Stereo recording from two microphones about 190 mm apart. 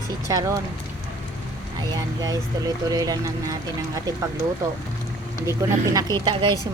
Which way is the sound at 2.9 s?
20° right (ahead or behind).